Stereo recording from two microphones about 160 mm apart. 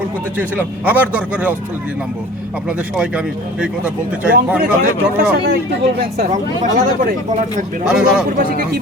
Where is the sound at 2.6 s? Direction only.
5° right (ahead or behind).